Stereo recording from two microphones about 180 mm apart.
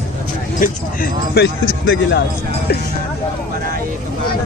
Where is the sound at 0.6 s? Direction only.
60° left (ahead or behind); by 2.2 s 80° left.